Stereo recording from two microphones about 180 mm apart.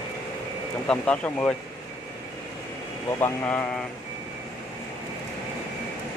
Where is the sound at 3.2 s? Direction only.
10° left (ahead or behind).